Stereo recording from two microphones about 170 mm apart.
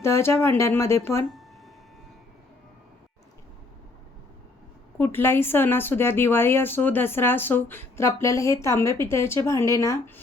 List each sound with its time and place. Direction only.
0.0 s a woman's voice: 15° left (ahead or behind)
4.9 s a woman's voice: 15° left (ahead or behind)